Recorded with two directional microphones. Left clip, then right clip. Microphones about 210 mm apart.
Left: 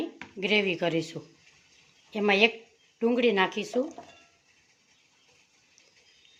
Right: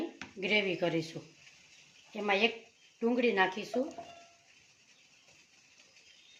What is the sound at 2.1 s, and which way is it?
A woman's voice, 40° left (ahead or behind).